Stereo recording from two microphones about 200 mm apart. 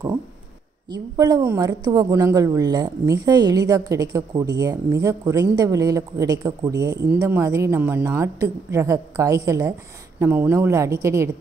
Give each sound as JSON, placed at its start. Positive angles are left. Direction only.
{"t": 0.9, "sound": "a woman's voice", "side_deg": -20}